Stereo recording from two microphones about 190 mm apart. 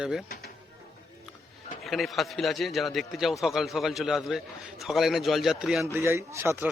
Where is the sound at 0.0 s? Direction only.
5° right (ahead or behind).